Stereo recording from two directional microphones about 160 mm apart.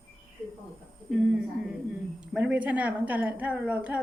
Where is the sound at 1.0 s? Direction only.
5° right (ahead or behind).